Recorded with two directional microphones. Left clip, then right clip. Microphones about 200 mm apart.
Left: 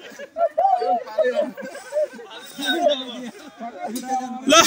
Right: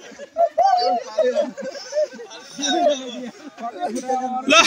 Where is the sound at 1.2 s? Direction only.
45° right (ahead or behind).